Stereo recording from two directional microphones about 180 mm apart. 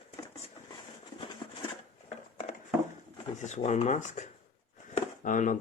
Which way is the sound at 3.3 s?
40° left (ahead or behind).